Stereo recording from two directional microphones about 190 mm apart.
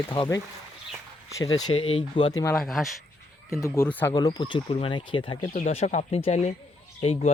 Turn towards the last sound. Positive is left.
turn(degrees=30)  # may be behind; listen again after turning